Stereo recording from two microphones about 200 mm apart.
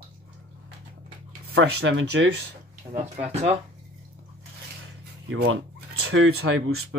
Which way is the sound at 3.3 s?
30° right (ahead or behind).